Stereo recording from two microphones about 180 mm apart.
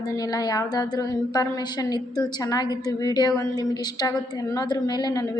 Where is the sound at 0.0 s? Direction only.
20° left (ahead or behind).